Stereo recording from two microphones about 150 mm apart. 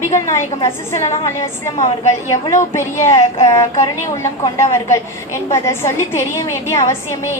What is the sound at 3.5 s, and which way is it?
A woman's voice, 20° left (ahead or behind).